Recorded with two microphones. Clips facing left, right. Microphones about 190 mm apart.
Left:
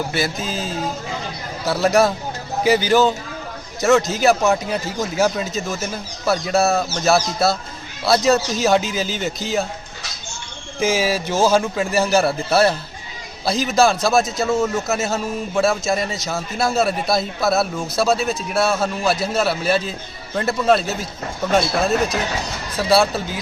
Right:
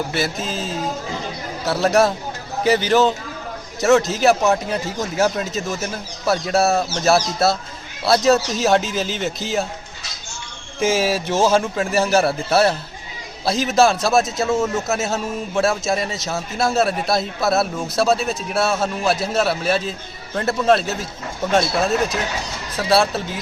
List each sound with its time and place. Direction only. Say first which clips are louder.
0.1 s a man's voice: even; centre (ahead or behind)
1.6 s a man's voice: even; centre (ahead or behind)
10.8 s a man's voice: even; centre (ahead or behind)
22.8 s a man's voice: left 1 dB; centre (ahead or behind)